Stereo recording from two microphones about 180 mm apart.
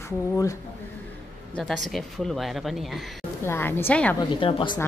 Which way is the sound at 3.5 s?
10° left (ahead or behind).